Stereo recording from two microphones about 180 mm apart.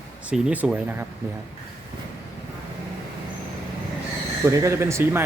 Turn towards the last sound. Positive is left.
turn(degrees=-15)  # may be behind; listen again after turning